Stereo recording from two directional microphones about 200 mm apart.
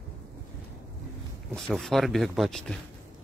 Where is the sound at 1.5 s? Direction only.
Centre (ahead or behind).